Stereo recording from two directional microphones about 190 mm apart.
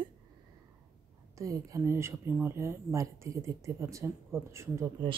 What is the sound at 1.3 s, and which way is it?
Speech, 15° right (ahead or behind).